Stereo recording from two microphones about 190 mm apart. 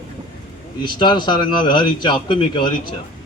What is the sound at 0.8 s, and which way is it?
A man's voice, 25° left (ahead or behind).